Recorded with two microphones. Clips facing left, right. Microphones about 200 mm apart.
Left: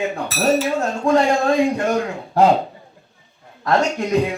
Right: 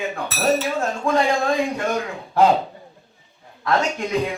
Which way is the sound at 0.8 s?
35° left (ahead or behind).